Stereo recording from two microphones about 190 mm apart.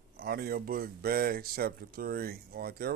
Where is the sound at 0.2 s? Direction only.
55° right (ahead or behind).